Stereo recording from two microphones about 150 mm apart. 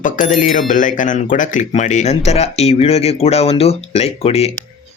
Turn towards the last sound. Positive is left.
turn(degrees=45)  # may be behind; listen again after turning